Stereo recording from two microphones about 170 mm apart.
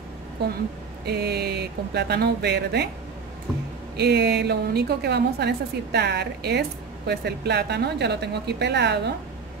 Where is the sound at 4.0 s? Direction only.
80° right.